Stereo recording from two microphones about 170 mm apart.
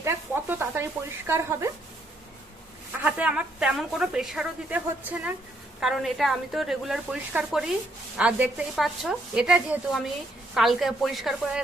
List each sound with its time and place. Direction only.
0.0 s speech: 15° right (ahead or behind)
3.0 s speech: 10° right (ahead or behind)